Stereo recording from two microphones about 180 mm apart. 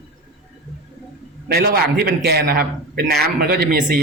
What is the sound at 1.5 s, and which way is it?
A man's voice, 60° right (ahead or behind).